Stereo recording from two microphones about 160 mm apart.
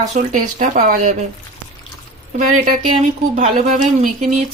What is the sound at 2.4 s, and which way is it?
Speech, 55° right (ahead or behind).